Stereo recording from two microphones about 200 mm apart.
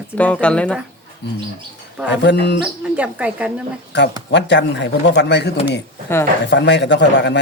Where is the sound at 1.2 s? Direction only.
60° left (ahead or behind).